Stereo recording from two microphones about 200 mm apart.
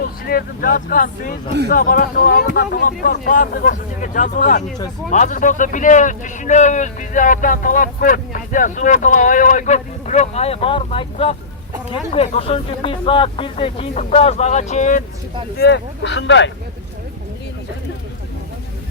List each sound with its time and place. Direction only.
0.3 s speech: 45° left (ahead or behind)
15.5 s speech: 60° left (ahead or behind)